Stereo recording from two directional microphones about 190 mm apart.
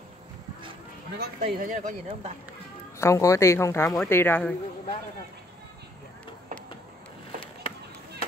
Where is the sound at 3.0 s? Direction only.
15° left (ahead or behind).